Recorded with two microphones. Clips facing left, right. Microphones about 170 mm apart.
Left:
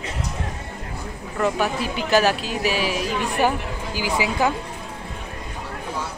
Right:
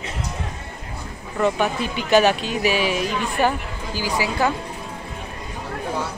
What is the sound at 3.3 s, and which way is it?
A woman's voice, 15° left (ahead or behind).